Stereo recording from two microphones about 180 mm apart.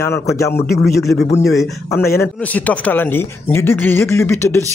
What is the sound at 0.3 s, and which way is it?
Speech, 15° left (ahead or behind).